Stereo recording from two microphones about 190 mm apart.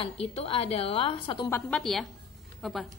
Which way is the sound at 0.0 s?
30° left (ahead or behind).